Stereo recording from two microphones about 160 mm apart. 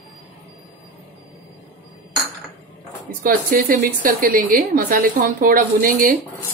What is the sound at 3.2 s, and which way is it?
A woman's voice, 60° right (ahead or behind).